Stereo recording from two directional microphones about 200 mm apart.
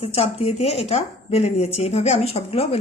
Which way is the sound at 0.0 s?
30° left (ahead or behind).